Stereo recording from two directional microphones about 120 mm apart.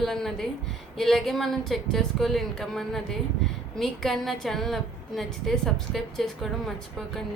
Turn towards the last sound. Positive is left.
turn(degrees=0)  # may be behind; listen again after turning